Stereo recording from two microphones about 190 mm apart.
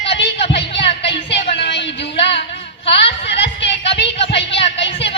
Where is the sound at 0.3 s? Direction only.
30° left (ahead or behind).